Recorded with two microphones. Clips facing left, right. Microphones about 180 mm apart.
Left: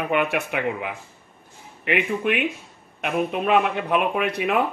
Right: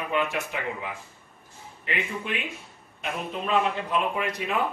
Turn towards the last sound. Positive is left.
turn(degrees=65)  # may be behind; listen again after turning